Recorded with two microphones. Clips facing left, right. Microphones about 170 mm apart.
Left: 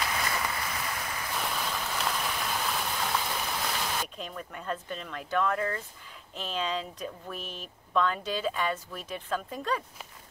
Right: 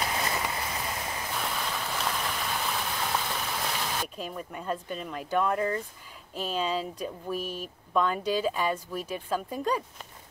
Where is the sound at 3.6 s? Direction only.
5° right (ahead or behind); by 5.8 s 20° right (ahead or behind).